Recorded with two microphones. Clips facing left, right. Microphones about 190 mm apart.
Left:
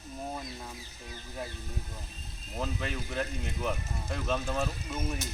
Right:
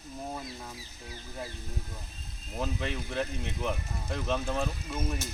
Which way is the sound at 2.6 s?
Centre (ahead or behind).